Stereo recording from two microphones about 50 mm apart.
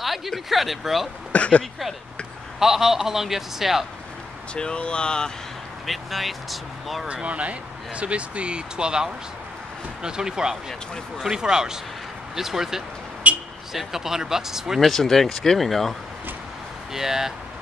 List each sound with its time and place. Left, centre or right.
0.0 s speech: centre
1.3 s speech: left
2.6 s a man's voice: centre
4.6 s speech: centre
5.9 s speech: centre
7.1 s a man's voice: right; by 12.8 s centre
13.2 s vehicle: right
13.7 s a man's voice: centre
14.9 s speech: centre
16.9 s a man's voice: centre